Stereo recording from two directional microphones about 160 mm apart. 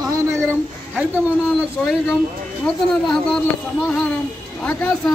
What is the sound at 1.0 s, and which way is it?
Speech, 5° right (ahead or behind).